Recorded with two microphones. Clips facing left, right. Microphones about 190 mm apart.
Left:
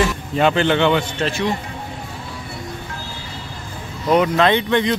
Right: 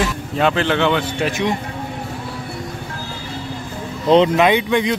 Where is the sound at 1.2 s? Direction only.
20° right (ahead or behind).